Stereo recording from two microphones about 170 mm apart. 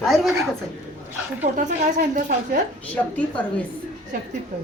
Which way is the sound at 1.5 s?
50° right (ahead or behind).